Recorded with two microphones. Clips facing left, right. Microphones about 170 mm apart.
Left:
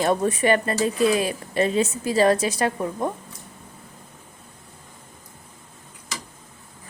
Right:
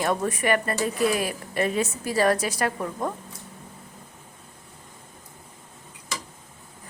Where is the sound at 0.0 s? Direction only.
25° left (ahead or behind).